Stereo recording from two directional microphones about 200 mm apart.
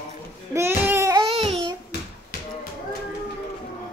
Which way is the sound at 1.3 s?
30° right (ahead or behind).